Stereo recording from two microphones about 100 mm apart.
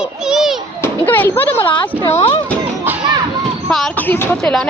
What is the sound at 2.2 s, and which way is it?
Speech, 80° left.